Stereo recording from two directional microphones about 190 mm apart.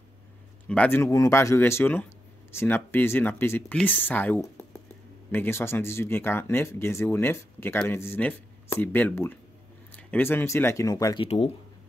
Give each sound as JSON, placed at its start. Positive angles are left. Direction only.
{"t": 0.7, "sound": "speech", "side_deg": 10}
{"t": 11.2, "sound": "speech", "side_deg": 35}